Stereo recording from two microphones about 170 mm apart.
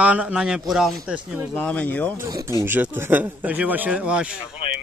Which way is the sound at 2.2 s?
20° right (ahead or behind).